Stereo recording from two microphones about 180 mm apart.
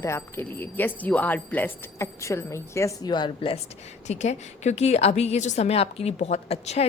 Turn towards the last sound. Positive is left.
turn(degrees=35)  # may be behind; listen again after turning